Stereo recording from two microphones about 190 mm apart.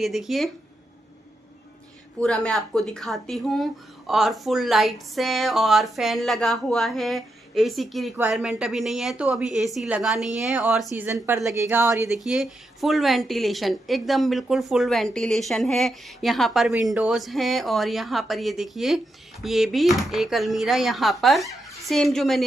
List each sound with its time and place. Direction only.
0.0 s speech: centre (ahead or behind)
2.1 s a woman's voice: 5° left (ahead or behind); by 12.1 s 15° right (ahead or behind)
12.1 s speech: centre (ahead or behind)